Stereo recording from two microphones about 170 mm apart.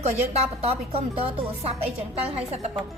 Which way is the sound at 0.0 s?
35° right (ahead or behind).